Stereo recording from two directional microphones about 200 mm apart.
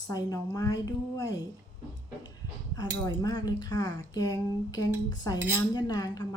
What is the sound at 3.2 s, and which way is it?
Speech, 20° left (ahead or behind).